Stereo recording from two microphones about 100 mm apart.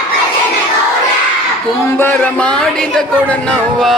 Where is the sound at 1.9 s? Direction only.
25° left (ahead or behind).